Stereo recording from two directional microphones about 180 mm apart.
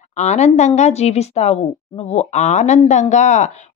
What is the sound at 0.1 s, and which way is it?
A woman's voice, 40° left (ahead or behind).